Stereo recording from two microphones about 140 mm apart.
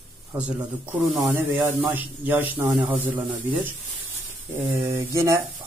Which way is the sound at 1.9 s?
10° right (ahead or behind).